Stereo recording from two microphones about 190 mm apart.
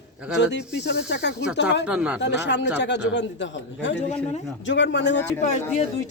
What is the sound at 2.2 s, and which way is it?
Speech, 65° left (ahead or behind).